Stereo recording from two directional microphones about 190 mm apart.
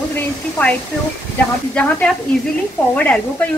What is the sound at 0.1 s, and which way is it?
Speech, 5° left (ahead or behind).